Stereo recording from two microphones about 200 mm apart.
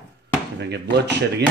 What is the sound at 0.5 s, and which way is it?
Speech, 55° right (ahead or behind).